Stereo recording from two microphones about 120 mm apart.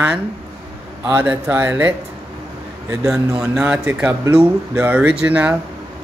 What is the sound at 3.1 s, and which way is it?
Speech, 5° right (ahead or behind).